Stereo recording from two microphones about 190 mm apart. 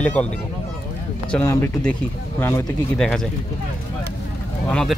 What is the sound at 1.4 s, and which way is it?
Speech, 15° left (ahead or behind).